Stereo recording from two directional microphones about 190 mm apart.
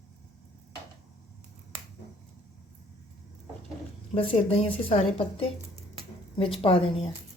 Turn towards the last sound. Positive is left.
turn(degrees=30)  # may be behind; listen again after turning